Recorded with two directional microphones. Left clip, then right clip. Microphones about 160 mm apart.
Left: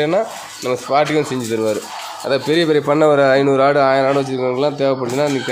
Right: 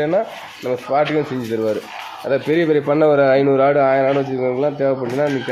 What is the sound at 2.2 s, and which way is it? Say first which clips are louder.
Speech: left 1 dB; 10° left (ahead or behind).